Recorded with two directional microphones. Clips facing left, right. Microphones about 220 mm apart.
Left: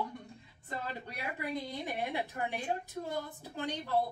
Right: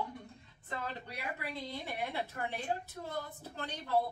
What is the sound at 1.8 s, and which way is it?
A woman's voice, 15° left (ahead or behind).